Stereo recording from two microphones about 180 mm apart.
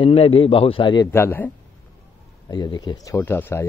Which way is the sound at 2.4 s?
25° left (ahead or behind).